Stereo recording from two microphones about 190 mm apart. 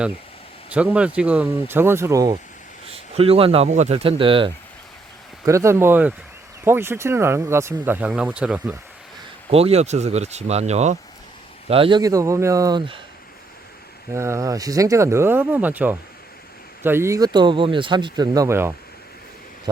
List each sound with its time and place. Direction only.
0.7 s speech: 5° right (ahead or behind)
2.9 s speech: 30° right (ahead or behind)
5.5 s speech: 15° right (ahead or behind)
9.5 s speech: 30° right (ahead or behind)
14.1 s speech: 15° right (ahead or behind)